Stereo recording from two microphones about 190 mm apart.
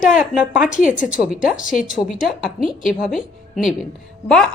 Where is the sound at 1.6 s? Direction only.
40° left (ahead or behind).